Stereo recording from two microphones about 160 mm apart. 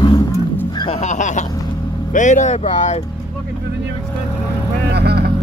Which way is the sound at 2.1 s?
50° left (ahead or behind).